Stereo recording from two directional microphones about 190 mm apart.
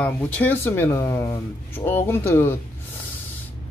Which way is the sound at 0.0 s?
10° left (ahead or behind).